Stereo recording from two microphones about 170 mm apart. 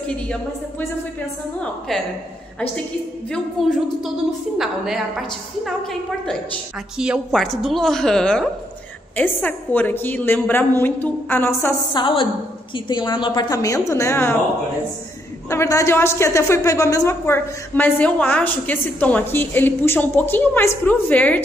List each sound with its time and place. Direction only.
3.6 s a woman's voice: centre (ahead or behind)
7.0 s a woman's voice: centre (ahead or behind)
11.9 s a woman's voice: 25° left (ahead or behind)
15.5 s a woman's voice: 15° left (ahead or behind)